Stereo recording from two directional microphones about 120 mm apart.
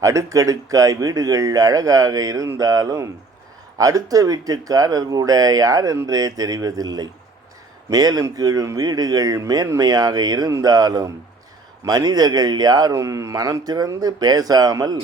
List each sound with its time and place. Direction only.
0.0 s speech: 25° right (ahead or behind)